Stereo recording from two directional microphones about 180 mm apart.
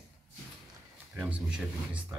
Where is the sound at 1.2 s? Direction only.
5° right (ahead or behind).